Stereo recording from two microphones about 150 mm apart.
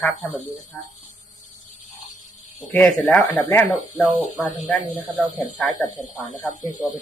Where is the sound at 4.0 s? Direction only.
5° right (ahead or behind).